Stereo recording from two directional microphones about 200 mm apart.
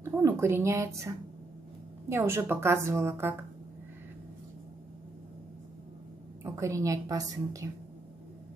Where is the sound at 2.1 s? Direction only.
10° right (ahead or behind).